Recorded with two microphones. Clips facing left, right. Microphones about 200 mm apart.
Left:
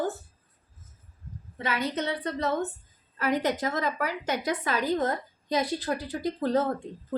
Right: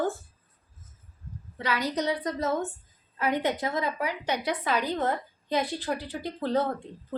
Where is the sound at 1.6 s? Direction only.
25° left (ahead or behind).